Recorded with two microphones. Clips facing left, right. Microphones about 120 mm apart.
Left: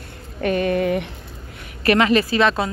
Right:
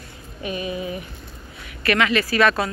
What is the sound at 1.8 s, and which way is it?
Speech, 35° left (ahead or behind).